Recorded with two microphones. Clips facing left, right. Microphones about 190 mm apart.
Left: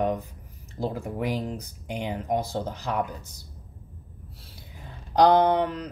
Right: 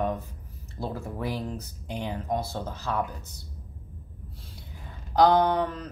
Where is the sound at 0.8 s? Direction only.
15° left (ahead or behind).